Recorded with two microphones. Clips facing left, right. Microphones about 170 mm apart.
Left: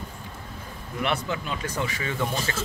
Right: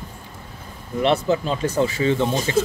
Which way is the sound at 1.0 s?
30° right (ahead or behind).